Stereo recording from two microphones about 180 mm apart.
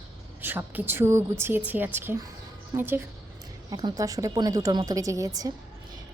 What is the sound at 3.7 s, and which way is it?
A woman's voice, 25° right (ahead or behind).